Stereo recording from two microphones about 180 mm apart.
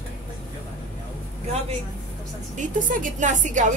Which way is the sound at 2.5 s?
45° right (ahead or behind).